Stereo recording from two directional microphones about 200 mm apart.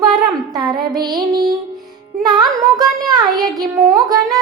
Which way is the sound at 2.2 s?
20° right (ahead or behind).